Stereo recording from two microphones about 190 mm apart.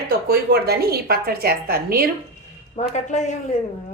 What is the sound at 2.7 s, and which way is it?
Speech, 40° left (ahead or behind).